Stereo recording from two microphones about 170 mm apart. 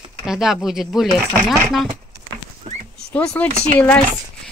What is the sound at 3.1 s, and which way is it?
Speech, 10° left (ahead or behind).